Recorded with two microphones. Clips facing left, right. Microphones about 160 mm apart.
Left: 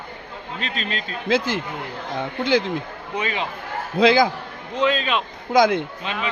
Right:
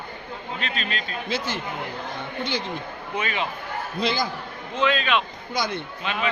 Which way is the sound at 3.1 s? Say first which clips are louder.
Left 2 dB; 20° left (ahead or behind).